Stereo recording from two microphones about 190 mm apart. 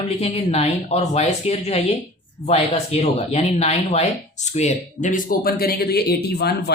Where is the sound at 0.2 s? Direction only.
35° left (ahead or behind).